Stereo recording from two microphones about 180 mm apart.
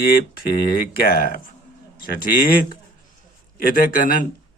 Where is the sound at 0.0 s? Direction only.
55° left (ahead or behind).